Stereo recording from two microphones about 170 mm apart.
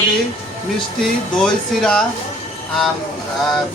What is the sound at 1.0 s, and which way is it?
Speech, 5° left (ahead or behind).